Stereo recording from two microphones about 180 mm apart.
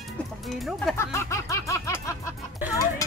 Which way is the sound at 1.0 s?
15° left (ahead or behind).